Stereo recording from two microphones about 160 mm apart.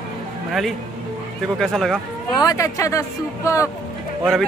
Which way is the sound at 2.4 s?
20° left (ahead or behind).